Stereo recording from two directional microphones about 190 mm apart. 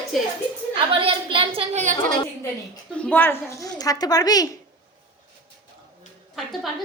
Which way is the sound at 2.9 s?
5° left (ahead or behind).